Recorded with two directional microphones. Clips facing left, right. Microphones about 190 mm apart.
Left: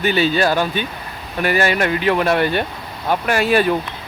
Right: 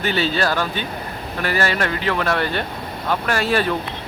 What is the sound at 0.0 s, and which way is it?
Speech, 15° left (ahead or behind).